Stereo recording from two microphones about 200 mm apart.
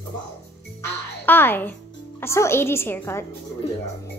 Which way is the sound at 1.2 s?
10° left (ahead or behind).